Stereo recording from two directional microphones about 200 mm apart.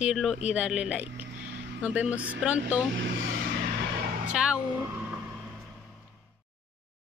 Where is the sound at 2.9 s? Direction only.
65° right (ahead or behind).